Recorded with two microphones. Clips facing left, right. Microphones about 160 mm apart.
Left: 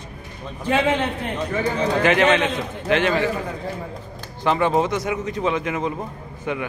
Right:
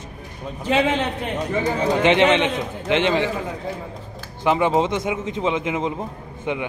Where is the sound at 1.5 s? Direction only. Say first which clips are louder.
Right 1 dB; 25° right (ahead or behind).